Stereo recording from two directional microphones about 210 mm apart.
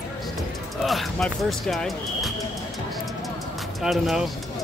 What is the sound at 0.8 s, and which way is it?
Speech, centre (ahead or behind).